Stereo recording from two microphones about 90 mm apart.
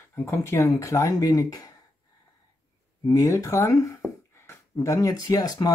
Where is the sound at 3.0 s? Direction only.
35° left (ahead or behind).